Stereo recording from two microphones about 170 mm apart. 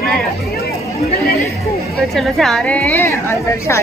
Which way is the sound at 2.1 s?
Centre (ahead or behind).